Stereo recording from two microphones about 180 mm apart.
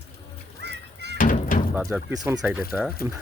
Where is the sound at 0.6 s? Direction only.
70° right (ahead or behind).